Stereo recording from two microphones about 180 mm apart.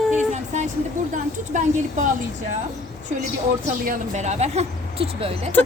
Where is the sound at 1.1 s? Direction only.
45° right (ahead or behind).